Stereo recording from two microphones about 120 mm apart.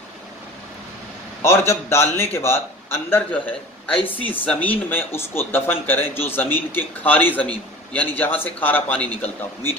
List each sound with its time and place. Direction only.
1.4 s a man's voice: 20° left (ahead or behind)